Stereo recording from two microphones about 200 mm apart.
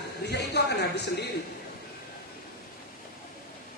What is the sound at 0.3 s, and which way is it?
Speech, 55° left (ahead or behind).